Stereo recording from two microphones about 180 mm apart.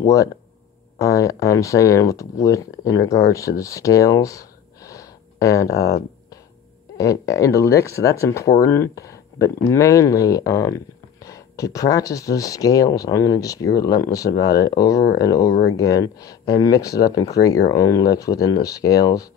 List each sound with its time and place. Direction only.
0.0 s speech: 20° left (ahead or behind)
7.0 s speech: 20° left (ahead or behind)